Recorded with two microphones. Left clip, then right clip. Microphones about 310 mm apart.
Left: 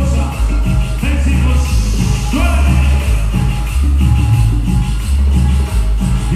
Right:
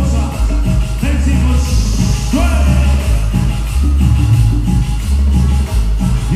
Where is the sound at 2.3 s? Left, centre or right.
Right.